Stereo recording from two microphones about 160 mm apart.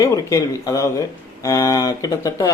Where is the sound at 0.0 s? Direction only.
20° left (ahead or behind).